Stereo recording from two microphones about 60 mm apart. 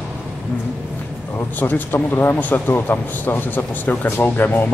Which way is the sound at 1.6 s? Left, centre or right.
Left.